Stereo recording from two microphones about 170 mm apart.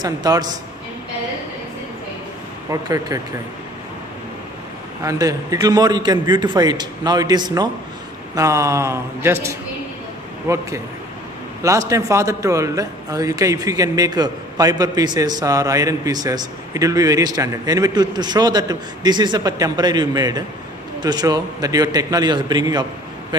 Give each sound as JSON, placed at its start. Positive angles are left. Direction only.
{"t": 0.0, "sound": "a man's voice", "side_deg": -25}
{"t": 2.7, "sound": "a man's voice", "side_deg": -20}
{"t": 5.0, "sound": "a man's voice", "side_deg": -20}